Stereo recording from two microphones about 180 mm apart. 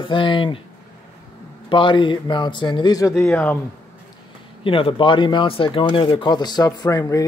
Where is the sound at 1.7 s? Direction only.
30° left (ahead or behind); by 3.5 s 10° left (ahead or behind).